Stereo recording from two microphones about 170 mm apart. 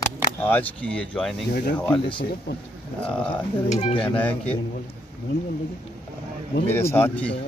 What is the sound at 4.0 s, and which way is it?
Speech, 10° left (ahead or behind).